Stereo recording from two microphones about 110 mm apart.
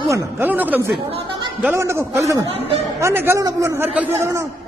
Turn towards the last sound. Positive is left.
turn(degrees=-25)  # may be behind; listen again after turning